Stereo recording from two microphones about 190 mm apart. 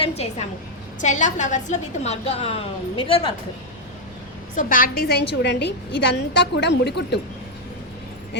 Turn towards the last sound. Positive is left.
turn(degrees=60)  # may be behind; listen again after turning